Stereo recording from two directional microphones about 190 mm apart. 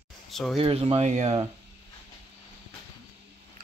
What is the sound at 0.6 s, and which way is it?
Speech, 30° right (ahead or behind).